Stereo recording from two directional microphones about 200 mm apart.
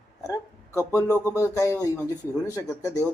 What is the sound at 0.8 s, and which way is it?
Speech, 15° left (ahead or behind).